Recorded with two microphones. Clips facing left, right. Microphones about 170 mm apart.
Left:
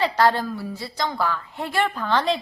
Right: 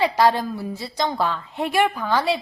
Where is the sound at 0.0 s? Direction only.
15° right (ahead or behind).